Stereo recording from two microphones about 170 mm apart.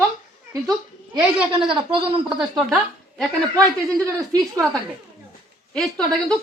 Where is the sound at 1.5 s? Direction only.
30° right (ahead or behind).